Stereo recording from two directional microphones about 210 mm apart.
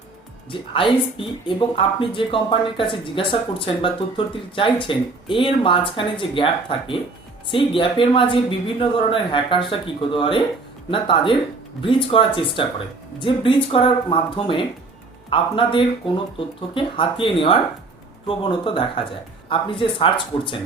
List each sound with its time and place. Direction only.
0.7 s speech: 25° left (ahead or behind)
4.5 s speech: 25° left (ahead or behind)